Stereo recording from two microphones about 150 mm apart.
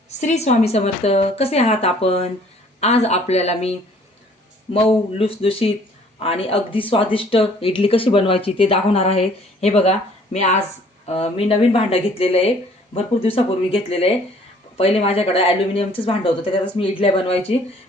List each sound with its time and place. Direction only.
0.2 s speech: 50° left (ahead or behind)